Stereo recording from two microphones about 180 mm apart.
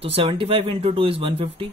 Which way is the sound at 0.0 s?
30° right (ahead or behind).